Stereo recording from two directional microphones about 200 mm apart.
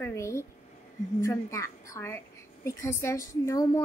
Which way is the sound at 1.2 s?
15° left (ahead or behind).